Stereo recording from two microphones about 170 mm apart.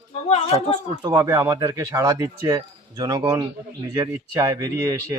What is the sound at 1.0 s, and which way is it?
Speech, 20° right (ahead or behind).